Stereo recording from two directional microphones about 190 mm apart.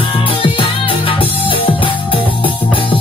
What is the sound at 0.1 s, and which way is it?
Music, 30° left (ahead or behind).